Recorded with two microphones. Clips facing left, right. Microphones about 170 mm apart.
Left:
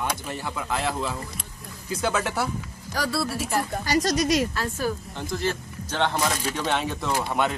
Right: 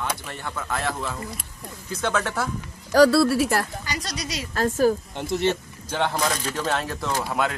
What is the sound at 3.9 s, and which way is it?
Speech, 45° left (ahead or behind).